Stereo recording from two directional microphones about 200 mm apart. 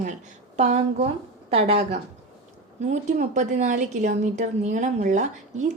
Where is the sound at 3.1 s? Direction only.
35° right (ahead or behind).